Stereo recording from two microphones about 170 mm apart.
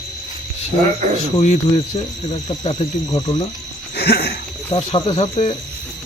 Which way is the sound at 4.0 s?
70° left (ahead or behind).